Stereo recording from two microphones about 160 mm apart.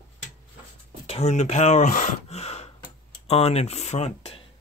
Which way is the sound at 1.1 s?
45° left (ahead or behind).